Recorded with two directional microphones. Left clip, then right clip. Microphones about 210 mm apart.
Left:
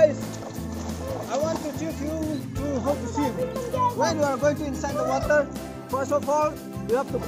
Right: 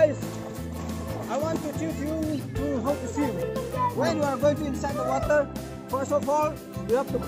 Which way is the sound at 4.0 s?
Centre (ahead or behind).